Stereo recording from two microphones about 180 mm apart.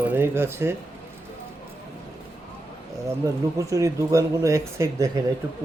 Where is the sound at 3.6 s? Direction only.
15° right (ahead or behind).